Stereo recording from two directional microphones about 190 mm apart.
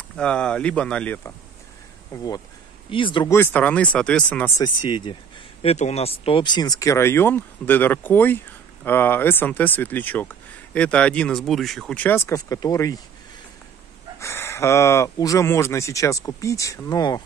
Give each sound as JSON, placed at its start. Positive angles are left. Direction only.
{"t": 0.1, "sound": "speech", "side_deg": 5}
{"t": 2.1, "sound": "speech", "side_deg": 20}
{"t": 3.3, "sound": "speech", "side_deg": 10}
{"t": 4.6, "sound": "speech", "side_deg": 25}
{"t": 5.6, "sound": "speech", "side_deg": 35}
{"t": 14.2, "sound": "speech", "side_deg": 15}